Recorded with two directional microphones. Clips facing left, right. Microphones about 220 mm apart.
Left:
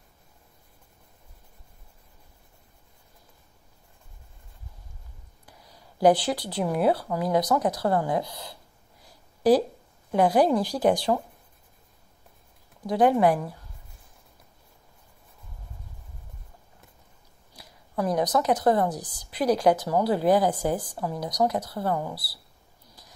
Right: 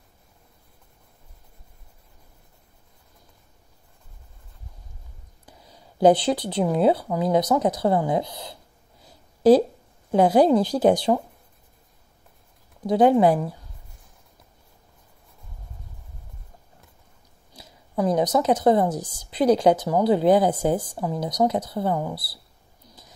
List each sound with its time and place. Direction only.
5.5 s speech: 25° right (ahead or behind)
9.0 s a sound: 25° right (ahead or behind)
10.1 s speech: 25° right (ahead or behind)
12.8 s speech: 25° right (ahead or behind)
17.6 s speech: 25° right (ahead or behind)